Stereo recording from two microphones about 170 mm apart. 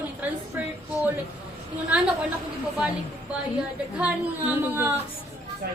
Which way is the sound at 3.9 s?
10° right (ahead or behind).